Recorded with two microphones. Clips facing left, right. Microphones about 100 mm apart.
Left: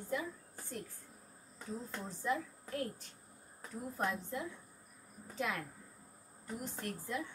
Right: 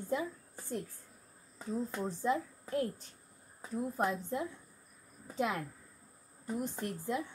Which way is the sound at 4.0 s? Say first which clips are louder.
Right 3 dB; 20° right (ahead or behind).